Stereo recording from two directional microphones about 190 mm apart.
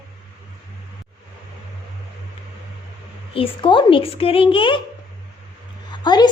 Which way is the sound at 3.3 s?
25° left (ahead or behind).